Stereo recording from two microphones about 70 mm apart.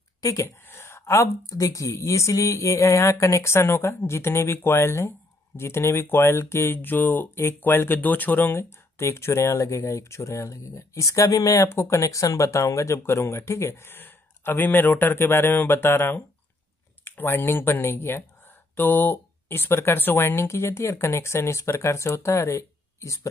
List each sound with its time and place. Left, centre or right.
0.2 s a woman's voice: left
0.7 s speech: left
11.5 s speech: left